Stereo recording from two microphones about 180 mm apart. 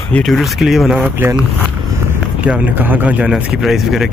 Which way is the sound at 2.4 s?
5° right (ahead or behind).